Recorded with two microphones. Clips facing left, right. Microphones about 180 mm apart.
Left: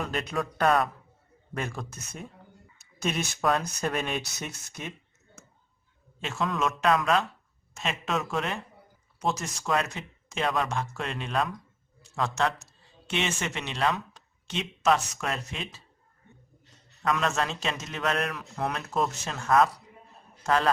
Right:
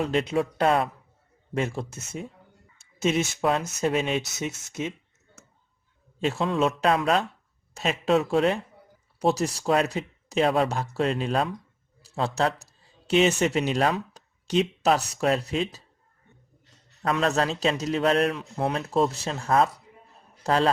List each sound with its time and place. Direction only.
0.0 s speech: 25° right (ahead or behind)
6.1 s a man's voice: 35° right (ahead or behind)
17.0 s a man's voice: 30° right (ahead or behind)